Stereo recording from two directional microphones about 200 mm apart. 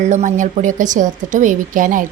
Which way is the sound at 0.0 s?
35° right (ahead or behind).